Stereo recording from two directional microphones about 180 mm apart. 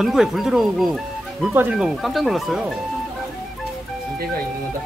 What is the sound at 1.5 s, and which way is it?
Speech, 10° right (ahead or behind).